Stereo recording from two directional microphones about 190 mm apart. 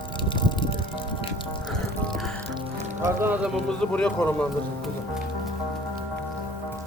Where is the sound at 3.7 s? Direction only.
5° left (ahead or behind).